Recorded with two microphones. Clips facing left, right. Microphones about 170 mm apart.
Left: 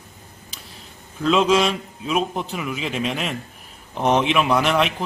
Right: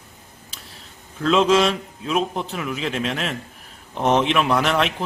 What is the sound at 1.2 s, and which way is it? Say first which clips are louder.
A man's voice: right 1 dB; centre (ahead or behind).